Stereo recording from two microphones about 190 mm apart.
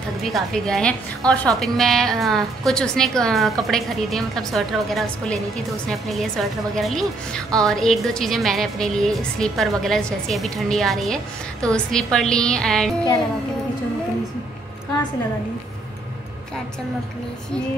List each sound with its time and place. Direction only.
0.3 s a woman's voice: centre (ahead or behind)